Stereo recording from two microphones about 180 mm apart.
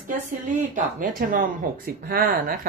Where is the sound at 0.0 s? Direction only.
45° right (ahead or behind).